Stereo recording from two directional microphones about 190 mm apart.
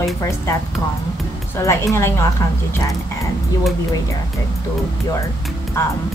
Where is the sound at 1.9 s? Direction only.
15° left (ahead or behind).